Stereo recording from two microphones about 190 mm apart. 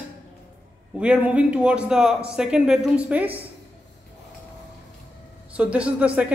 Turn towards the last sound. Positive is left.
turn(degrees=-5)  # may be behind; listen again after turning